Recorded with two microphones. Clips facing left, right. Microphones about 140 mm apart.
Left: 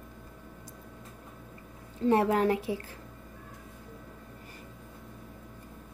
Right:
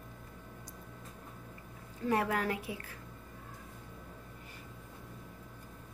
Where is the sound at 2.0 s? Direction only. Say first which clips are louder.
Left 7 dB; 25° left (ahead or behind).